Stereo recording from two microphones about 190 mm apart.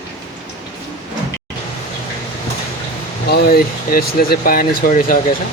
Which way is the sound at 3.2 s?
55° left (ahead or behind).